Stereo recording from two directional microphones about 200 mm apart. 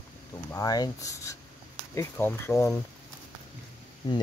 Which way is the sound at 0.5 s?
15° left (ahead or behind).